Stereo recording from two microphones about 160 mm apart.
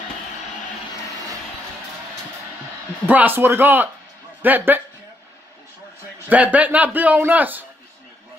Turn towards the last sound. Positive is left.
turn(degrees=-10)  # may be behind; listen again after turning